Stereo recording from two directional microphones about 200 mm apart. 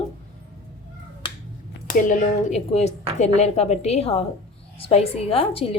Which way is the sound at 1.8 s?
35° left (ahead or behind).